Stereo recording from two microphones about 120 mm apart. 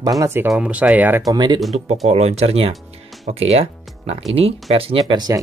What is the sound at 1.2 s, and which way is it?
Speech, 35° right (ahead or behind).